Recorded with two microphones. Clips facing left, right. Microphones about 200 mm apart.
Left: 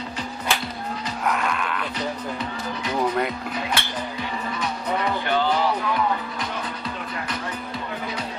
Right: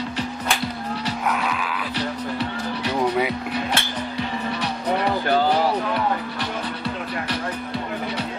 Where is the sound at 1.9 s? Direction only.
70° right (ahead or behind).